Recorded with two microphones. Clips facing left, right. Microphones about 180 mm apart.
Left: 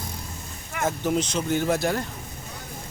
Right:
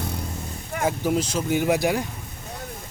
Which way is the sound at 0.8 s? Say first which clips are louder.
Right 1 dB; 10° right (ahead or behind).